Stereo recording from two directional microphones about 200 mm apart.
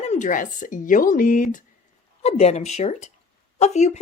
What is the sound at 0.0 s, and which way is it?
A woman's voice, 35° left (ahead or behind).